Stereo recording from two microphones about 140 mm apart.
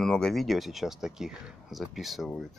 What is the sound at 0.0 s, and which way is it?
Speech, 5° left (ahead or behind).